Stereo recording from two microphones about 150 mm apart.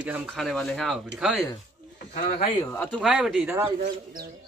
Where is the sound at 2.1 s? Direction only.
60° left (ahead or behind).